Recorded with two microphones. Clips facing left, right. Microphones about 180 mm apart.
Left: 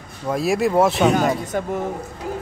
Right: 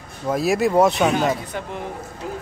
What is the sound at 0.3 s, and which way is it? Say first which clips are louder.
Speech: even; centre (ahead or behind).